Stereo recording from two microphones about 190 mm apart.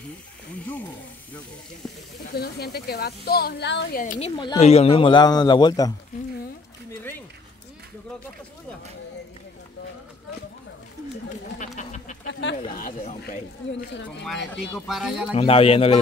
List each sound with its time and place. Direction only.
2.3 s speech: 55° left (ahead or behind)
4.0 s a man's voice: 40° left (ahead or behind); by 5.9 s 20° left (ahead or behind)
6.9 s a sound: 10° left (ahead or behind)
11.5 s a sound: 40° left (ahead or behind)
12.3 s speech: 70° left (ahead or behind)
13.2 s speech: 55° left (ahead or behind)
14.9 s speech: centre (ahead or behind)
15.3 s a man's voice: 30° left (ahead or behind)